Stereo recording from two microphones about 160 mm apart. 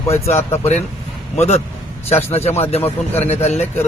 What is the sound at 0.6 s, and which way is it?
Speech, 45° left (ahead or behind).